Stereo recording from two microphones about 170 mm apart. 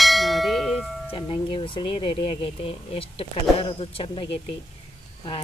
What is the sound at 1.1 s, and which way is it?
Speech, 30° left (ahead or behind).